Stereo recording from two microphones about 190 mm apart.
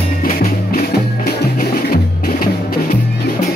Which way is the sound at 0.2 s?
50° left (ahead or behind).